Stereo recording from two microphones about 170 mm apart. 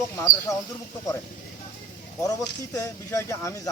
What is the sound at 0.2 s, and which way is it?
Speech, 20° left (ahead or behind).